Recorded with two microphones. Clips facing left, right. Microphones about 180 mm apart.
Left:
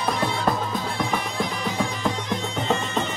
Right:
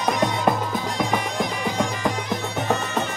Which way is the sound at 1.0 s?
15° right (ahead or behind).